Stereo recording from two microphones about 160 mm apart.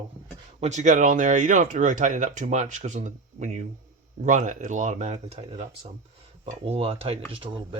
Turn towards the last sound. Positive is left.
turn(degrees=-35)  # may be behind; listen again after turning